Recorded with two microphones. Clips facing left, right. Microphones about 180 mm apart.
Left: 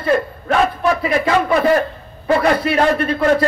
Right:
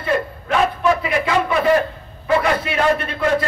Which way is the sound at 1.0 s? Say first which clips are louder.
Left 3 dB; 40° left (ahead or behind).